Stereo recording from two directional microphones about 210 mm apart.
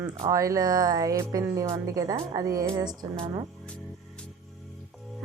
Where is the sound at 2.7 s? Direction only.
20° right (ahead or behind).